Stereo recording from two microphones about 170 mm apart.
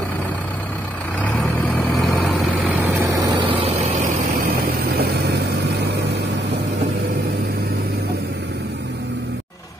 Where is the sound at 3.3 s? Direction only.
35° right (ahead or behind).